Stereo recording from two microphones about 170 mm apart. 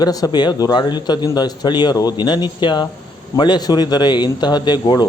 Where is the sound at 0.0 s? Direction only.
20° left (ahead or behind).